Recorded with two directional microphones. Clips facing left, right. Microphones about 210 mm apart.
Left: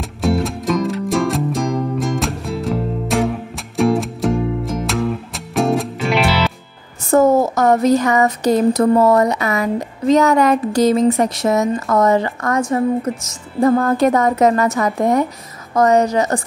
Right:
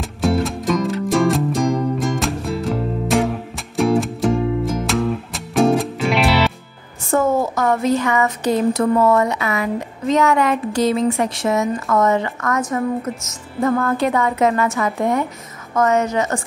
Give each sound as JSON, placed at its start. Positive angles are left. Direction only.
{"t": 0.2, "sound": "music", "side_deg": 0}
{"t": 7.1, "sound": "speech", "side_deg": 40}